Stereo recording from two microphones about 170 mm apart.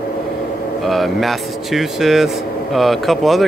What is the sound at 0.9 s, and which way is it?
A man's voice, centre (ahead or behind).